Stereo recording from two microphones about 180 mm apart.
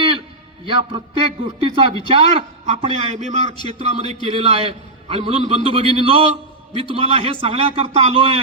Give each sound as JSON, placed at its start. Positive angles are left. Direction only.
{"t": 0.6, "sound": "a man's voice", "side_deg": -30}